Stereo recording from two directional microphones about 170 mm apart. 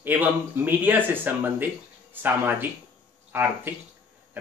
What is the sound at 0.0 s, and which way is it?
Speech, 10° right (ahead or behind).